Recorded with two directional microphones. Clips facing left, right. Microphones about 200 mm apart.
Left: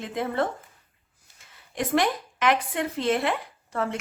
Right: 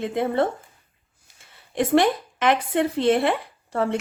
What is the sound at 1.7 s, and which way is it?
A woman's voice, 30° right (ahead or behind).